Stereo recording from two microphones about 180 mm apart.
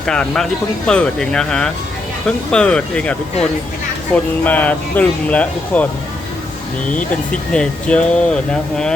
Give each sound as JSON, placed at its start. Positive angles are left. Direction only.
{"t": 0.0, "sound": "speech", "side_deg": 5}
{"t": 7.5, "sound": "speech", "side_deg": 5}